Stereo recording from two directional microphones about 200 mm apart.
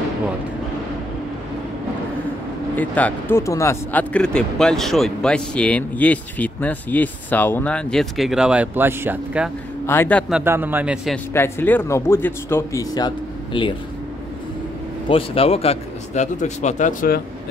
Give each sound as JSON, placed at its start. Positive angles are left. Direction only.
{"t": 2.7, "sound": "speech", "side_deg": 5}
{"t": 9.8, "sound": "speech", "side_deg": 10}
{"t": 10.3, "sound": "a man's voice", "side_deg": -10}
{"t": 11.3, "sound": "speech", "side_deg": 10}
{"t": 15.0, "sound": "a man's voice", "side_deg": 30}